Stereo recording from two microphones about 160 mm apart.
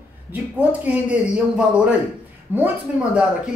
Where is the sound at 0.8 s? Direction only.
10° right (ahead or behind).